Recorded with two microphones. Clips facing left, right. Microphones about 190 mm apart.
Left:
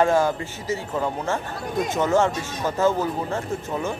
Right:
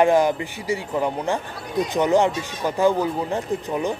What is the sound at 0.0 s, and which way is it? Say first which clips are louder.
Speech: right 2 dB; 15° right (ahead or behind).